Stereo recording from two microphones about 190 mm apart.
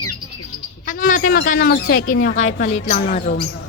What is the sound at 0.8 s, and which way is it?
Speech, 45° left (ahead or behind).